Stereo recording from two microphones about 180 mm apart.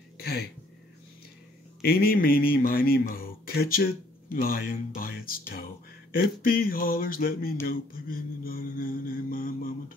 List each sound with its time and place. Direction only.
0.2 s speech: 60° left (ahead or behind)
1.8 s speech: 55° left (ahead or behind)
6.1 s a sound: 55° left (ahead or behind)